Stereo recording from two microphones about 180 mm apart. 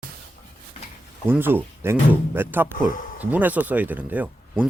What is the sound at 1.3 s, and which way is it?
Speech, 10° right (ahead or behind).